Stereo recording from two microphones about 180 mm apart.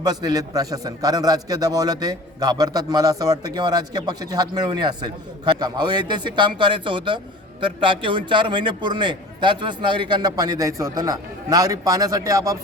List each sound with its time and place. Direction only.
0.0 s a man's voice: 20° right (ahead or behind)